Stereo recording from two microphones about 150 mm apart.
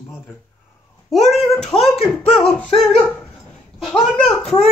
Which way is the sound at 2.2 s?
40° left (ahead or behind).